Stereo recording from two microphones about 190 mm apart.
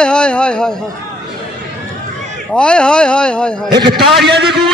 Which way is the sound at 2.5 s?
5° left (ahead or behind).